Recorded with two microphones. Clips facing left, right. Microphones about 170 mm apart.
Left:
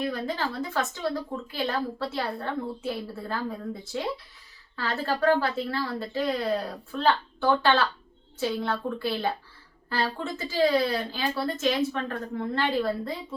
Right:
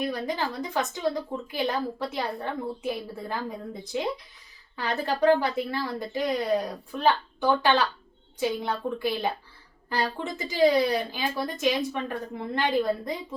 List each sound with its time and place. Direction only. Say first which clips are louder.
0.1 s a woman's voice: right 1 dB; 15° right (ahead or behind)